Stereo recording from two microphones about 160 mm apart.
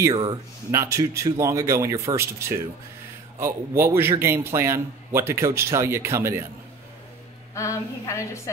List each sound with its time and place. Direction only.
0.0 s a man's voice: 25° right (ahead or behind)
7.5 s a woman's voice: 20° left (ahead or behind)